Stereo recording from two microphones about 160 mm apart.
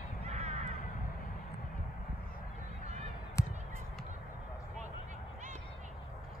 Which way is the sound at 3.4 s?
20° left (ahead or behind).